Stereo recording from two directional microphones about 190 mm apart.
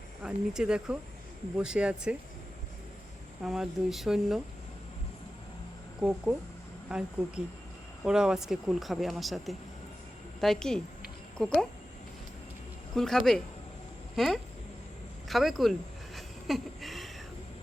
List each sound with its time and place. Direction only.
0.2 s speech: 5° right (ahead or behind)
3.4 s speech: centre (ahead or behind)
6.0 s a woman's voice: 5° right (ahead or behind)
12.9 s speech: centre (ahead or behind)
16.1 s a sound: centre (ahead or behind)